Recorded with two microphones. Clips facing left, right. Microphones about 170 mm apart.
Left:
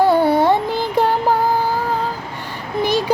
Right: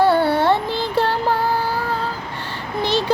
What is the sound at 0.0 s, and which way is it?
Carnatic music, 15° left (ahead or behind).